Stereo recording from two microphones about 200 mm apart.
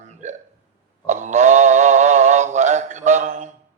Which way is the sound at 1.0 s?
35° right (ahead or behind).